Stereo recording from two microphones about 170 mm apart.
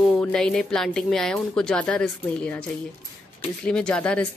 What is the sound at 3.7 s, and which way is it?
Speech, 5° left (ahead or behind).